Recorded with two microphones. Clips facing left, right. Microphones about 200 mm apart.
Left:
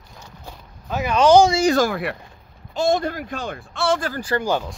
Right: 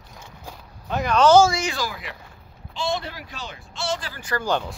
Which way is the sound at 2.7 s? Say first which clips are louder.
Left 8 dB; 45° left (ahead or behind).